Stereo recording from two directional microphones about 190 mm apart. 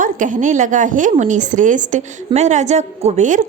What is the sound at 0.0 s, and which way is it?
A woman's voice, 45° right (ahead or behind).